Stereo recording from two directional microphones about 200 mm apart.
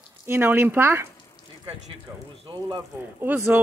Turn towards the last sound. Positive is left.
turn(degrees=-10)  # may be behind; listen again after turning